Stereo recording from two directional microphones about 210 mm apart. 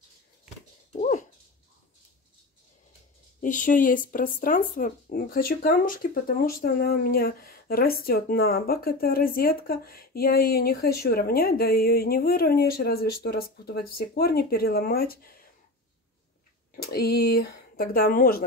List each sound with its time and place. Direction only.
3.3 s speech: 40° left (ahead or behind)
16.7 s speech: 50° left (ahead or behind)